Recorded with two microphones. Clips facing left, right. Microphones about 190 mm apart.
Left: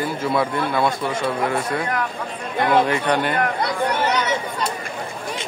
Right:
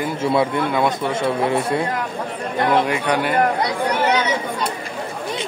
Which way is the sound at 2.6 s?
5° right (ahead or behind).